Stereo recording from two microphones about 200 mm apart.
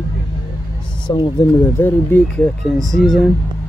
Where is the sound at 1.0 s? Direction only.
20° left (ahead or behind); by 3.3 s centre (ahead or behind).